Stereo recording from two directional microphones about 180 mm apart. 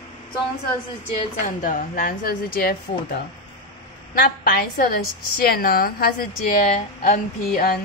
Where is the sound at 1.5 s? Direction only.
50° left (ahead or behind).